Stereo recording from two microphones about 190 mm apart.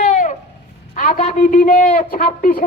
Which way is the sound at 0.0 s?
40° left (ahead or behind).